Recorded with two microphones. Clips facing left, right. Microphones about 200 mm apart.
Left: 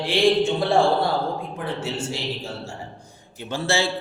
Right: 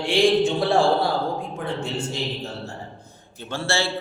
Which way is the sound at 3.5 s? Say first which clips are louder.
Left 2 dB; 15° left (ahead or behind).